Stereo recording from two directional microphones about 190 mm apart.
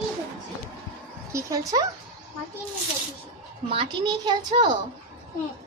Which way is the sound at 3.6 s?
25° right (ahead or behind).